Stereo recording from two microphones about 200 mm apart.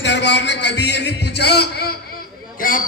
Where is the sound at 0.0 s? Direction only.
60° left (ahead or behind).